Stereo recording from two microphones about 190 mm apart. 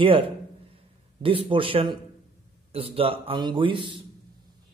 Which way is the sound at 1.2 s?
25° right (ahead or behind).